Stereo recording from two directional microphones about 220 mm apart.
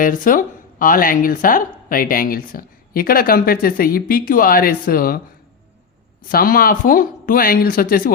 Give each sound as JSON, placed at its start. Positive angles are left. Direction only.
{"t": 0.0, "sound": "speech", "side_deg": 40}
{"t": 6.2, "sound": "speech", "side_deg": 40}